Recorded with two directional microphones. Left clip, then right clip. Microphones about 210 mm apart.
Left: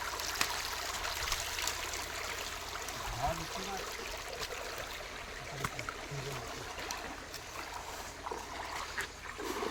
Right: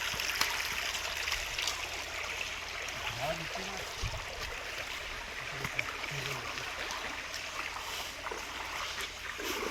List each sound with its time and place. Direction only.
0.2 s stream: 20° left (ahead or behind)